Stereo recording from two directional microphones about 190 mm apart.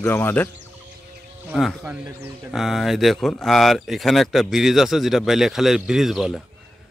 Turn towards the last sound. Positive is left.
turn(degrees=0)  # may be behind; listen again after turning